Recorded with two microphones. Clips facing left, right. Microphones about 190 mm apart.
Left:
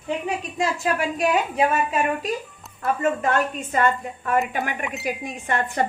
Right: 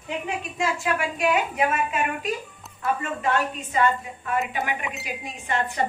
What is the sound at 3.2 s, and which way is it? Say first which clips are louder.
A woman's voice: left 2 dB; 50° left (ahead or behind).